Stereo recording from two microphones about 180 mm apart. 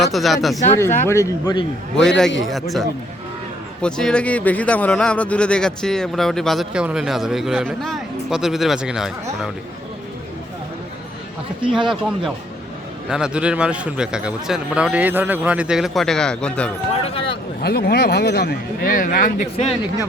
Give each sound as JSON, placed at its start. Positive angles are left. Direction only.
{"t": 0.0, "sound": "a man's voice", "side_deg": 0}
{"t": 1.0, "sound": "speech", "side_deg": 15}
{"t": 2.0, "sound": "a man's voice", "side_deg": 5}
{"t": 11.9, "sound": "a man's voice", "side_deg": 0}
{"t": 16.9, "sound": "speech", "side_deg": 30}
{"t": 17.6, "sound": "a man's voice", "side_deg": 65}